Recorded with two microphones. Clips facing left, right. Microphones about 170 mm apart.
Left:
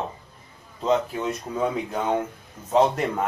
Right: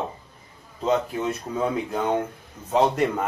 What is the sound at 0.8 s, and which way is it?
Speech, centre (ahead or behind).